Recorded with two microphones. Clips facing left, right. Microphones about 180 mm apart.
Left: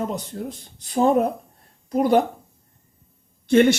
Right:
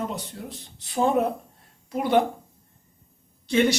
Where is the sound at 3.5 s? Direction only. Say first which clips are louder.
Left 6 dB; 55° left (ahead or behind).